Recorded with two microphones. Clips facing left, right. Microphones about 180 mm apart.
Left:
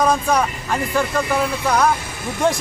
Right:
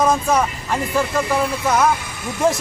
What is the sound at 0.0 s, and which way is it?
Speech, 5° right (ahead or behind).